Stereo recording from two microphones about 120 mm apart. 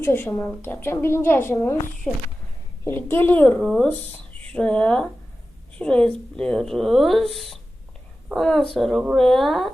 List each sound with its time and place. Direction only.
0.0 s a woman's voice: 20° left (ahead or behind)
3.6 s speech: centre (ahead or behind)